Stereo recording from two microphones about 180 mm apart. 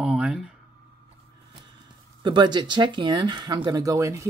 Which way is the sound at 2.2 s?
25° right (ahead or behind).